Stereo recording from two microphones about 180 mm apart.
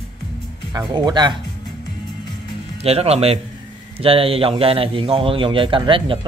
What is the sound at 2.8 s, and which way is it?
A man's voice, 35° right (ahead or behind).